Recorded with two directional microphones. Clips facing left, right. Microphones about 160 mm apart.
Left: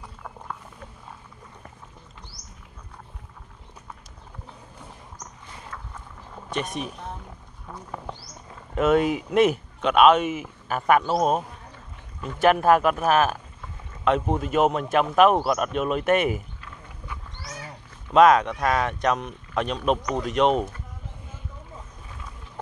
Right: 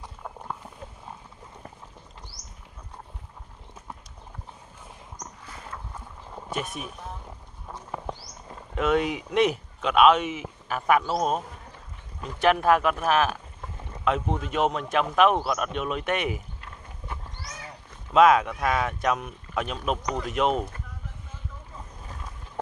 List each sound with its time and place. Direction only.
6.5 s speech: 5° right (ahead or behind)
8.7 s speech: 5° left (ahead or behind)
18.1 s speech: 5° right (ahead or behind)